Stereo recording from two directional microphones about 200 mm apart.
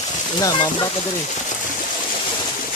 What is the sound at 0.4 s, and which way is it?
Speech, 20° left (ahead or behind).